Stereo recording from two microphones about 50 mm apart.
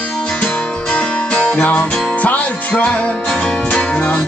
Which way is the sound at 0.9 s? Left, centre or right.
Left.